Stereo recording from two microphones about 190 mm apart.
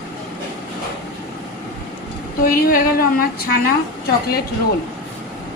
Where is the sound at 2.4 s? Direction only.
50° left (ahead or behind).